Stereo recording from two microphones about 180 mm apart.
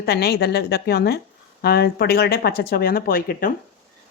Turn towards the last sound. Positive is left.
turn(degrees=55)  # may be behind; listen again after turning